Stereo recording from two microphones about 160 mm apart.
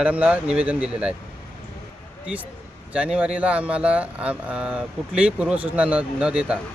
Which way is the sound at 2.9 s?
5° right (ahead or behind).